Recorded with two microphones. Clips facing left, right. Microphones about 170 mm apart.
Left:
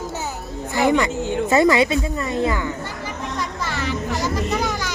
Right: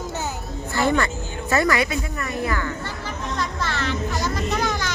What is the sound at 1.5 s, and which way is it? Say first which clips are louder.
Music: left 4 dB; 25° left (ahead or behind).